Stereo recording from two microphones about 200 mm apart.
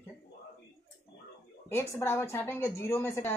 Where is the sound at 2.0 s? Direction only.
10° left (ahead or behind).